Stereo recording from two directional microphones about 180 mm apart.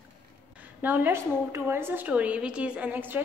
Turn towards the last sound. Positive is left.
turn(degrees=-10)  # may be behind; listen again after turning